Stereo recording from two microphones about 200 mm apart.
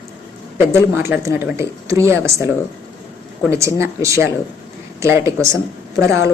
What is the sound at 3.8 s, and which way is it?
Speech, 15° right (ahead or behind).